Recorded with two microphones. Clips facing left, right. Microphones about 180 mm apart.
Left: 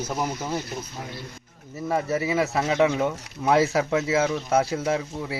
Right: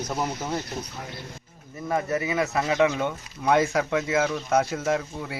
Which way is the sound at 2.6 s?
25° left (ahead or behind).